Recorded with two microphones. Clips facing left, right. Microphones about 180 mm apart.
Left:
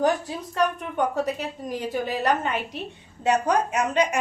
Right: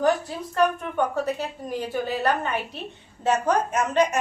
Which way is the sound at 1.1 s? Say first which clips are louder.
Even; 20° left (ahead or behind).